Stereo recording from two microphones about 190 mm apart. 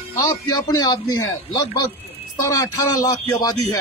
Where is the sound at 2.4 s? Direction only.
15° left (ahead or behind).